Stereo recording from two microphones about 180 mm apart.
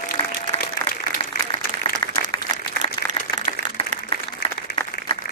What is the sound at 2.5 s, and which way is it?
Applause, 40° right (ahead or behind).